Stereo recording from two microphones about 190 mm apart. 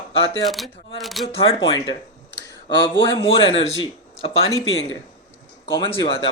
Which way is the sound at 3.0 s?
25° left (ahead or behind).